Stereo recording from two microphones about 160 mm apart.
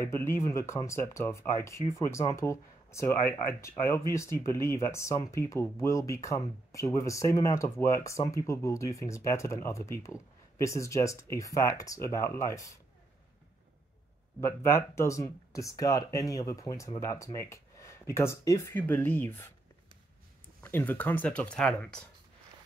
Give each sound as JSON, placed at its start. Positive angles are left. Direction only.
{"t": 0.0, "sound": "speech", "side_deg": 15}
{"t": 14.4, "sound": "speech", "side_deg": 15}
{"t": 20.6, "sound": "speech", "side_deg": 10}